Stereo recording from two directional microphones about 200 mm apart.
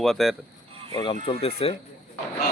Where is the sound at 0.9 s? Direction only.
25° left (ahead or behind).